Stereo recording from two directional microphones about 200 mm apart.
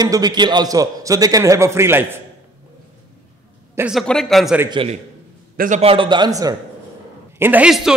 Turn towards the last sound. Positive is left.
turn(degrees=0)  # may be behind; listen again after turning